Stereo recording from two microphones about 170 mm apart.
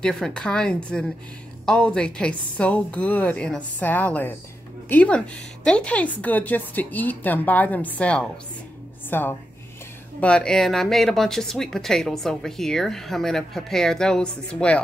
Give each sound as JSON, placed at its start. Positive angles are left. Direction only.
{"t": 0.0, "sound": "speech", "side_deg": 5}